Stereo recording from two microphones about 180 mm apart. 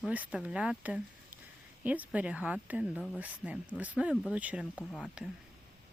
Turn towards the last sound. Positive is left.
turn(degrees=0)  # may be behind; listen again after turning